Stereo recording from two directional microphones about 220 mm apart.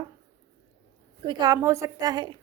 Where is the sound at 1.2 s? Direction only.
15° right (ahead or behind).